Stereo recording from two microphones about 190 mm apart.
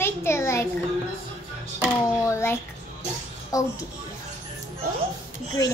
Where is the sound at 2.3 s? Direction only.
15° left (ahead or behind).